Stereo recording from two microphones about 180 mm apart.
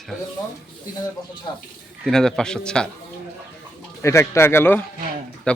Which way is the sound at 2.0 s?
5° left (ahead or behind).